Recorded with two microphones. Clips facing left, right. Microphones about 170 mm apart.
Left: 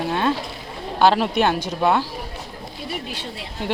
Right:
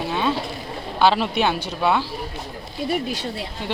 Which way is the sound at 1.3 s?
50° left (ahead or behind).